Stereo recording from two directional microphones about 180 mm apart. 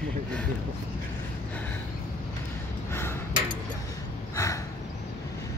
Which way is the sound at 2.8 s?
15° left (ahead or behind).